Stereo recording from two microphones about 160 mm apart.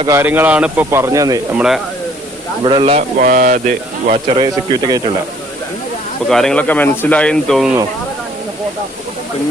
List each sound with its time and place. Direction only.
0.1 s speech: 15° right (ahead or behind)
1.5 s speech: 5° right (ahead or behind)
2.6 s speech: 30° right (ahead or behind)
3.2 s speech: 60° right (ahead or behind)
4.3 s speech: 25° right (ahead or behind)
6.2 s speech: 5° left (ahead or behind)